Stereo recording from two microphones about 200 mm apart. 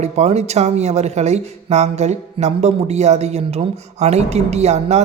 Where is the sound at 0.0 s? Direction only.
35° right (ahead or behind).